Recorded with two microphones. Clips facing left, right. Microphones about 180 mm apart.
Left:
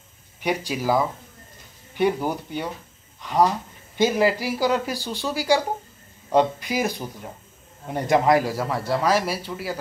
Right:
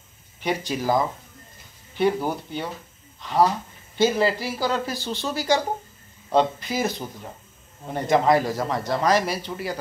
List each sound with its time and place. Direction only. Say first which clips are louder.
0.4 s a man's voice: left 1 dB; 10° left (ahead or behind)
2.2 s a man's voice: left 1 dB; 15° left (ahead or behind)